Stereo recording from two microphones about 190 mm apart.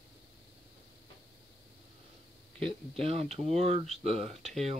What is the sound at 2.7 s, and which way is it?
Speech, 30° right (ahead or behind).